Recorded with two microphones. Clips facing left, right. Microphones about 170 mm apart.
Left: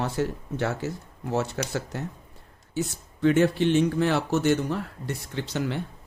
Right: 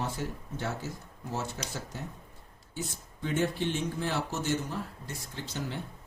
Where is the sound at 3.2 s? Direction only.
75° left (ahead or behind).